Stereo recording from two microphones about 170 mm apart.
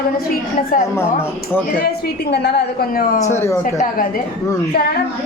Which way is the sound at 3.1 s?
45° left (ahead or behind).